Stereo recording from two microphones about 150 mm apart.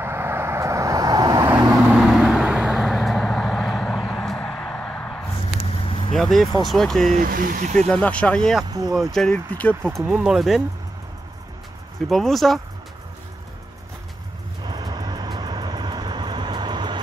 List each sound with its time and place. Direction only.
0.0 s vehicle: 15° right (ahead or behind)
1.9 s vehicle: 5° right (ahead or behind)
5.9 s vehicle: 40° left (ahead or behind)
6.1 s speech: centre (ahead or behind)
7.2 s speech: 70° right (ahead or behind)
7.9 s speech: 10° left (ahead or behind)
8.6 s speech: 25° right (ahead or behind)
9.1 s speech: 5° left (ahead or behind)
10.2 s speech: 5° right (ahead or behind)
12.1 s speech: centre (ahead or behind)
14.6 s vehicle: 30° right (ahead or behind)